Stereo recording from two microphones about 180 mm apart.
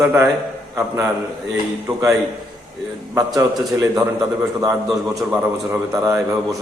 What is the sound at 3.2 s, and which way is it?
Speech, 20° right (ahead or behind).